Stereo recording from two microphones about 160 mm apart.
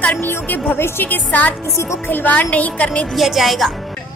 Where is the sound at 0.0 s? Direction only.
10° left (ahead or behind).